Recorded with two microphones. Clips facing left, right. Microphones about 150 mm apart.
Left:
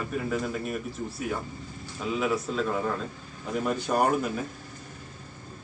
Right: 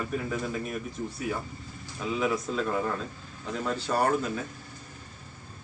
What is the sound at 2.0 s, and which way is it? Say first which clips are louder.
Speech: left 1 dB; centre (ahead or behind).